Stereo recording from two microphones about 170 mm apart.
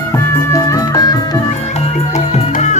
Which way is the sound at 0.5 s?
20° left (ahead or behind).